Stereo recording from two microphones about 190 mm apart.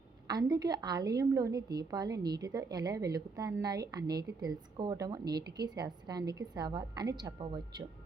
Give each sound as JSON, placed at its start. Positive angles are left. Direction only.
{"t": 0.3, "sound": "a woman's voice", "side_deg": -20}